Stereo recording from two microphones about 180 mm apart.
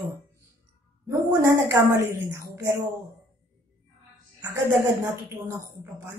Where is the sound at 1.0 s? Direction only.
15° right (ahead or behind).